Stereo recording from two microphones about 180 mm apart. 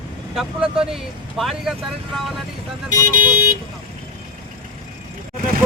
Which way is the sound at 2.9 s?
45° right (ahead or behind).